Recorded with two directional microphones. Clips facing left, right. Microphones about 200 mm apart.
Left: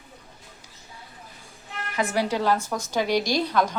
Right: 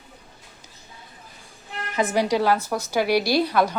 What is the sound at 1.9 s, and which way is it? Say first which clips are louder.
Speech: right 4 dB; 20° right (ahead or behind).